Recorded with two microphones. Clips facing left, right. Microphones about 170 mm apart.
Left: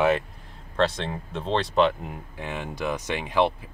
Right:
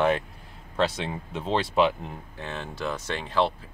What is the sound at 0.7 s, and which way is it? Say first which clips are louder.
Speech: left 2 dB; 5° right (ahead or behind).